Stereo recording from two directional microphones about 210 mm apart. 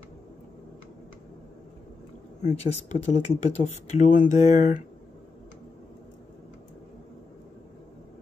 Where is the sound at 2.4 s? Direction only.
35° left (ahead or behind).